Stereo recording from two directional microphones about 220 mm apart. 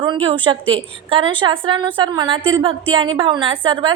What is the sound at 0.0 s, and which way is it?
A woman's voice, 20° right (ahead or behind).